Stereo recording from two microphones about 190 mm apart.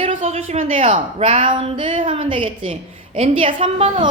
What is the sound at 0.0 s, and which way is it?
A woman's voice, 30° right (ahead or behind).